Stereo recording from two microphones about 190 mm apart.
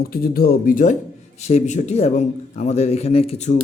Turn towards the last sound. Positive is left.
turn(degrees=35)  # may be behind; listen again after turning